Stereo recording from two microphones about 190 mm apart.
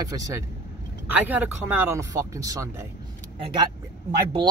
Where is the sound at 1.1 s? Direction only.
5° right (ahead or behind).